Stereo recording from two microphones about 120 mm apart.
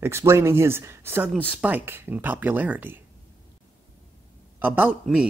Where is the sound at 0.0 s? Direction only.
20° right (ahead or behind).